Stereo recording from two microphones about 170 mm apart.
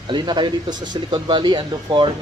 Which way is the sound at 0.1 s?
25° right (ahead or behind).